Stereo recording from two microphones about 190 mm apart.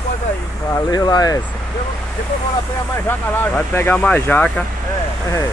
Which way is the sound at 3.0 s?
10° left (ahead or behind).